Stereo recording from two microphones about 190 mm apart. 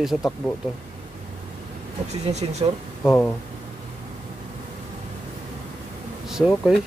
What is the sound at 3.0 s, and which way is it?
Speech, 10° left (ahead or behind).